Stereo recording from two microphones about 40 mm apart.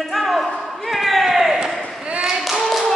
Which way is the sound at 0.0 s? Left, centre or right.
Centre.